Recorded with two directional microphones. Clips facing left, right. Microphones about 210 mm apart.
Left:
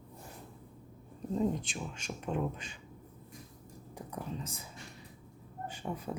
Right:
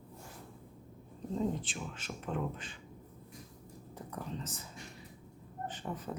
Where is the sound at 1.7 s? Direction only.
15° left (ahead or behind).